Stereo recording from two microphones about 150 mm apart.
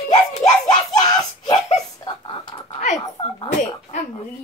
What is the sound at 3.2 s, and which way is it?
Speech, 35° left (ahead or behind).